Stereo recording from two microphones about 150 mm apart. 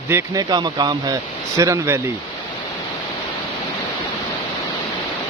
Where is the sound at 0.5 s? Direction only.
30° right (ahead or behind).